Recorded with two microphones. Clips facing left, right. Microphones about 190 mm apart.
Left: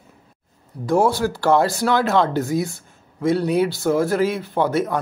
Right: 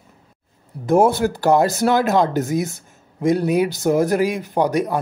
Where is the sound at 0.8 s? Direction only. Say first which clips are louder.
Right 3 dB; 20° right (ahead or behind).